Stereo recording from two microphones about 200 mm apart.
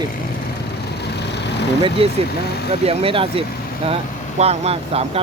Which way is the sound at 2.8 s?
25° right (ahead or behind).